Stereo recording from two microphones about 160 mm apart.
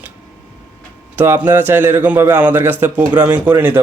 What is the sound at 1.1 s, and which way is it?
Speech, 15° right (ahead or behind).